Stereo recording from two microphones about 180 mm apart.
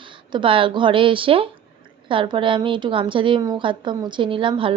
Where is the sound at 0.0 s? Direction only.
25° right (ahead or behind).